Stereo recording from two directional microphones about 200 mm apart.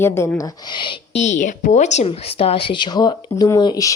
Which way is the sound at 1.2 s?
40° left (ahead or behind).